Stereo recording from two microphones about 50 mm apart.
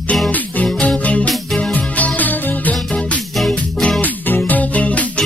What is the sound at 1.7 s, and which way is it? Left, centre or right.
Music, left.